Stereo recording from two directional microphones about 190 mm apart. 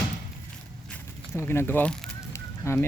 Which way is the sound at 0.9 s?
15° left (ahead or behind).